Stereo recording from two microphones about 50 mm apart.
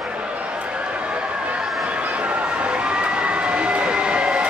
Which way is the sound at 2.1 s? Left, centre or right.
Right.